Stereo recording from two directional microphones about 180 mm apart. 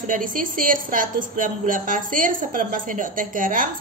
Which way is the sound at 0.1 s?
50° right (ahead or behind).